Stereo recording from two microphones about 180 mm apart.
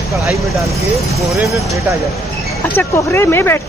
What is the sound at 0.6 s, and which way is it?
Speech, centre (ahead or behind).